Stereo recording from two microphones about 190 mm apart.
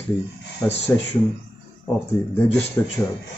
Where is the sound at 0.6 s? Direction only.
15° left (ahead or behind).